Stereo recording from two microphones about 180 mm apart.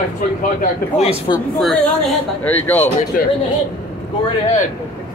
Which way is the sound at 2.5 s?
10° left (ahead or behind).